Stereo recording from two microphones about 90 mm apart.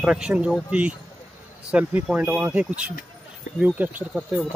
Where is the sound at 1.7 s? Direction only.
15° right (ahead or behind).